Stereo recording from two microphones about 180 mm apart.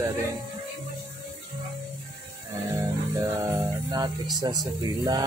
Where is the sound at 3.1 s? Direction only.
10° right (ahead or behind).